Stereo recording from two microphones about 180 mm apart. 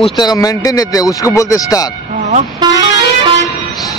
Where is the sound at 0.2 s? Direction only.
20° left (ahead or behind).